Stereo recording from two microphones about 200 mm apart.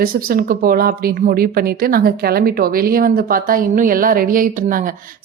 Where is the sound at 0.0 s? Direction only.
45° right (ahead or behind).